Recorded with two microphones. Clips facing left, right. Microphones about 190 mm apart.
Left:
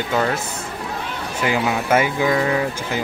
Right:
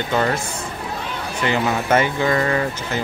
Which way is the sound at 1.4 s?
5° left (ahead or behind).